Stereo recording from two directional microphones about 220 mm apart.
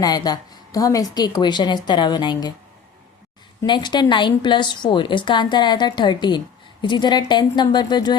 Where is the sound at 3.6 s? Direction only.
20° left (ahead or behind).